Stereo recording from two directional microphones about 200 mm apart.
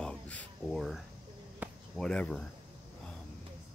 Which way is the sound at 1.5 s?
Centre (ahead or behind).